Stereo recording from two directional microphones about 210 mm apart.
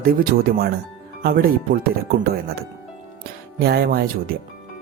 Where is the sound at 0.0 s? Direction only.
45° right (ahead or behind).